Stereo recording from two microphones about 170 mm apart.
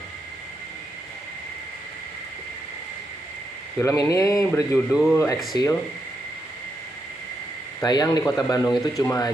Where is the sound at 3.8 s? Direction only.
15° left (ahead or behind).